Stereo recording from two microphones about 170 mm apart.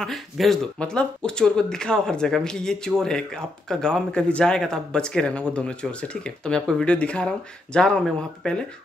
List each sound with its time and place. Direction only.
0.0 s speech: centre (ahead or behind)